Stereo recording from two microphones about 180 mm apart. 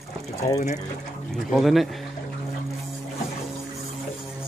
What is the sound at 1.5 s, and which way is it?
Speech, centre (ahead or behind).